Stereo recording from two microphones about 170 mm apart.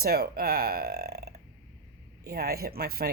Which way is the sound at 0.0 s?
65° right (ahead or behind).